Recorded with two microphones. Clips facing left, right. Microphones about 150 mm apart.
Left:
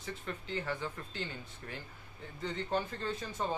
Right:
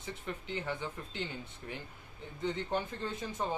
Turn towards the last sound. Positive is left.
turn(degrees=-15)  # may be behind; listen again after turning